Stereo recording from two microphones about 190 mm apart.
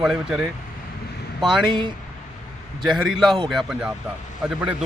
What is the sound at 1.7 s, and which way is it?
Speech, 25° right (ahead or behind).